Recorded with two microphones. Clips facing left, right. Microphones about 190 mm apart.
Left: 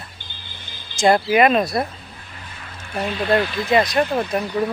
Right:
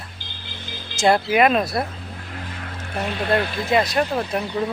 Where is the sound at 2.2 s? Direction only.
70° right (ahead or behind).